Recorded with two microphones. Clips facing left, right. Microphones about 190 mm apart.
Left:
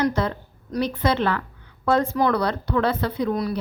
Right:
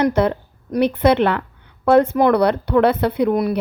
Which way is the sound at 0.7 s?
60° right (ahead or behind).